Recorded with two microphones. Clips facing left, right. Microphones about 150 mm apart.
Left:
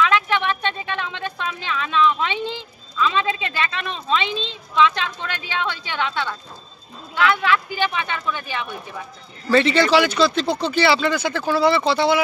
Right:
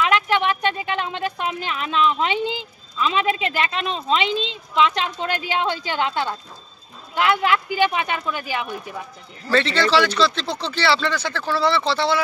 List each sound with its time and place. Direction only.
0.0 s a sound: 20° right (ahead or behind)
1.1 s a woman's voice: 20° right (ahead or behind)
7.2 s speech: 20° right (ahead or behind)
9.5 s speech: 10° left (ahead or behind)